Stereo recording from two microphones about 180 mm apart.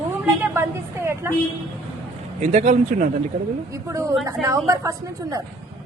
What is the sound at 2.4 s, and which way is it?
Speech, 40° right (ahead or behind).